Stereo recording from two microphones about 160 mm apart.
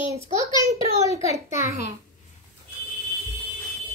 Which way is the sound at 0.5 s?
20° right (ahead or behind).